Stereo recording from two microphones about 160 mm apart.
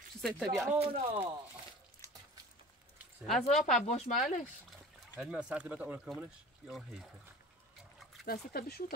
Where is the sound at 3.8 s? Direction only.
45° left (ahead or behind).